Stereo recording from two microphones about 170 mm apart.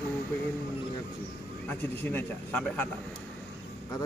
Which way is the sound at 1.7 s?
10° left (ahead or behind).